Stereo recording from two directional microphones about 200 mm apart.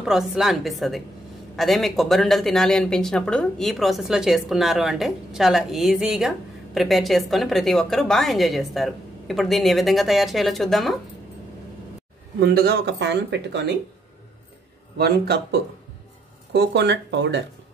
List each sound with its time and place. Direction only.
0.0 s speech: centre (ahead or behind)
12.4 s speech: 55° right (ahead or behind)
15.0 s speech: 55° right (ahead or behind)
16.5 s speech: 60° right (ahead or behind)